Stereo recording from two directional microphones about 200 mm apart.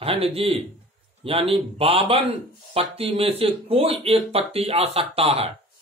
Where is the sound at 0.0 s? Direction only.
30° right (ahead or behind).